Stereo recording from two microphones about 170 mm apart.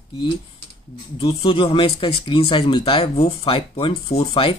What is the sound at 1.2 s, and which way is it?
Speech, 35° left (ahead or behind).